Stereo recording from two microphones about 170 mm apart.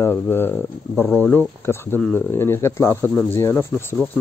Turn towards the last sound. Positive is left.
turn(degrees=10)  # may be behind; listen again after turning